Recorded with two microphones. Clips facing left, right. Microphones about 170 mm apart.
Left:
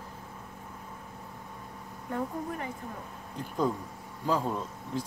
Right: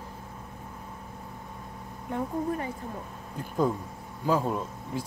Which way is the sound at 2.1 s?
20° right (ahead or behind).